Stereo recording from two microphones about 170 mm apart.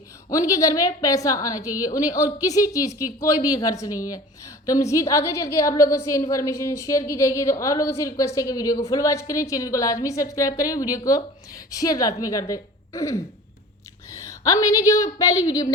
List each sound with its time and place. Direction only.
0.3 s a woman's voice: 20° left (ahead or behind)